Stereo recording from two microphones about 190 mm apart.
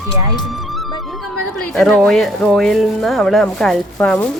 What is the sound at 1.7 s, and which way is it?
Speech, centre (ahead or behind).